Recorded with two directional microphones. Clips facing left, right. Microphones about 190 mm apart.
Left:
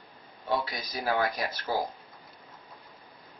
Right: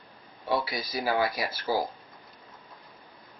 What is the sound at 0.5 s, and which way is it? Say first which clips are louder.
Speech: right 2 dB; 5° right (ahead or behind).